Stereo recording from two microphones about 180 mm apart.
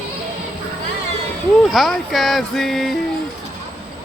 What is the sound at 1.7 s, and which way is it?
Speech, centre (ahead or behind).